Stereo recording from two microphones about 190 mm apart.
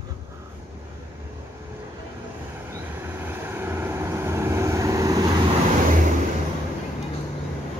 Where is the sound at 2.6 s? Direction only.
10° right (ahead or behind).